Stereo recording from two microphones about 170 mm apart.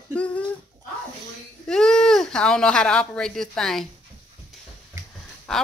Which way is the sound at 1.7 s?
5° left (ahead or behind).